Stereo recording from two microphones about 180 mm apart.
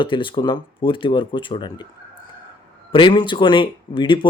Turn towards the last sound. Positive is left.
turn(degrees=25)  # may be behind; listen again after turning